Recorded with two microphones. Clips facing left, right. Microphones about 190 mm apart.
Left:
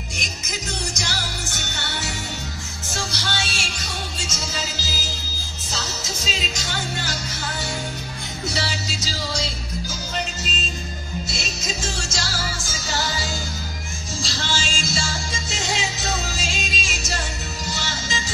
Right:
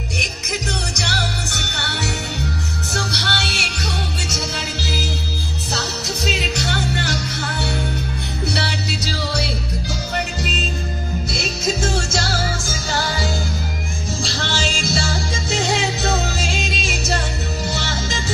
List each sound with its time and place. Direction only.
0.2 s music: 65° right (ahead or behind)
8.5 s music: 65° right (ahead or behind)